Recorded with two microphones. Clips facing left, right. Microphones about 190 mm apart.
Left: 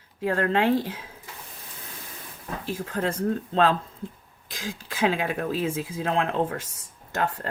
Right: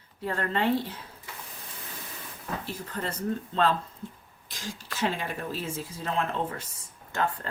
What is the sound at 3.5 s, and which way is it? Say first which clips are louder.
Speech: left 3 dB; 90° left.